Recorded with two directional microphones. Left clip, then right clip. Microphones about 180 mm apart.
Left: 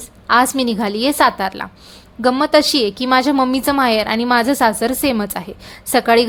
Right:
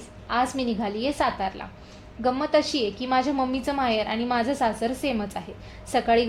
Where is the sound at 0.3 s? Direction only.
45° left (ahead or behind).